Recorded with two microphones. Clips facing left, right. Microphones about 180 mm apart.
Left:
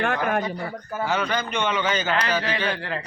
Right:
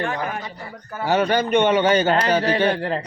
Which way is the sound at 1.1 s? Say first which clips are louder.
Right 9 dB; 40° right (ahead or behind).